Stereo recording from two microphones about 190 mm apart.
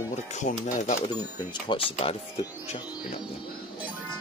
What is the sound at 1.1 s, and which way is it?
Speech, 20° left (ahead or behind).